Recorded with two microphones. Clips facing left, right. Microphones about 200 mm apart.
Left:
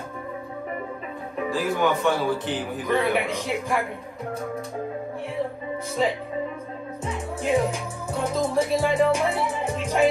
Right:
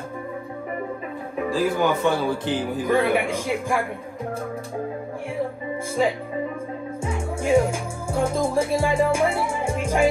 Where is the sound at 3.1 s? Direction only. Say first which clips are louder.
Right 2 dB; 50° right (ahead or behind).